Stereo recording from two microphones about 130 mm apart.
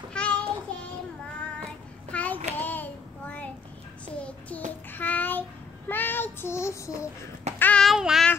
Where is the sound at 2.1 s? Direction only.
10° left (ahead or behind).